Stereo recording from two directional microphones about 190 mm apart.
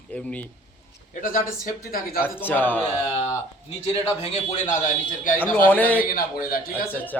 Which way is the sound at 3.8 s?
30° left (ahead or behind).